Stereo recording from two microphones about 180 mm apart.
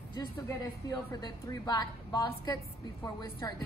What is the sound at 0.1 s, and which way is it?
A woman's voice, 20° left (ahead or behind).